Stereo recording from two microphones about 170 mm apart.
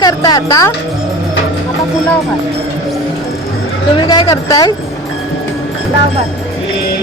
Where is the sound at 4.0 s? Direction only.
25° left (ahead or behind).